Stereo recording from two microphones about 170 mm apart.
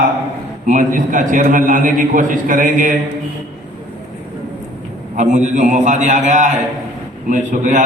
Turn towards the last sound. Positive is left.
turn(degrees=-50)  # may be behind; listen again after turning